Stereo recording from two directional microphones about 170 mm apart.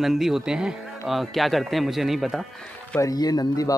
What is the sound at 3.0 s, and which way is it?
Speech, 20° left (ahead or behind).